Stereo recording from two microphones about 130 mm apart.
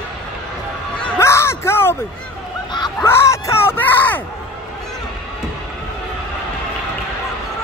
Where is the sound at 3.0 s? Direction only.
20° left (ahead or behind).